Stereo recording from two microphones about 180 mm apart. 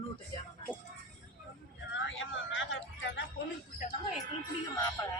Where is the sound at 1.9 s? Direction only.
90° left.